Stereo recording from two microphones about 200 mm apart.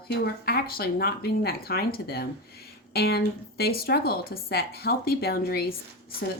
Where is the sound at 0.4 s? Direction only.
50° left (ahead or behind).